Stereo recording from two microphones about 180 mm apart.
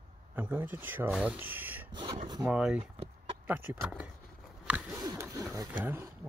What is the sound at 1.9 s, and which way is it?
Speech, 25° right (ahead or behind).